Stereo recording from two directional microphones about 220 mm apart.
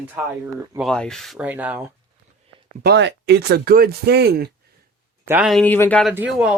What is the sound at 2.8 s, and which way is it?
Speech, 50° right (ahead or behind).